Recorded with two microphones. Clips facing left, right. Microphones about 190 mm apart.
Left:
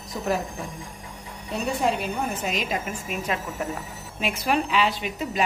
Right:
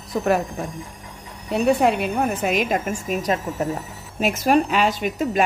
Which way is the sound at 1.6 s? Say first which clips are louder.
Right 7 dB; 65° right (ahead or behind).